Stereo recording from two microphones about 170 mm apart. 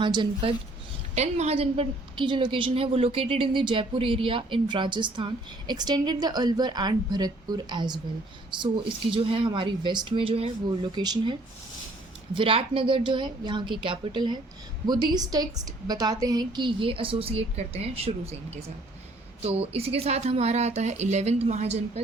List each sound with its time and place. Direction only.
0.0 s a woman's voice: 30° right (ahead or behind)
1.1 s a woman's voice: 40° right (ahead or behind)